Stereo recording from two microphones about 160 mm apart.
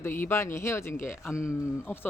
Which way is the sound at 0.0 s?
15° left (ahead or behind).